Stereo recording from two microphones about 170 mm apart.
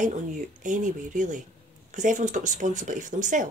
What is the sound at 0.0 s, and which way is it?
Speech, 50° right (ahead or behind).